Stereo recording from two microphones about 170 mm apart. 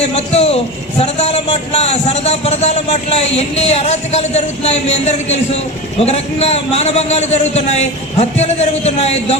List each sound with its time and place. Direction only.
0.0 s a man's voice: 35° left (ahead or behind)